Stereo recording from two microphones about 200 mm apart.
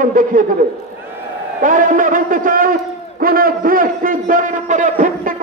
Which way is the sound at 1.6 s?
40° right (ahead or behind).